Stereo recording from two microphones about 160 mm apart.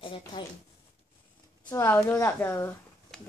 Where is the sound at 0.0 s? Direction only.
35° left (ahead or behind).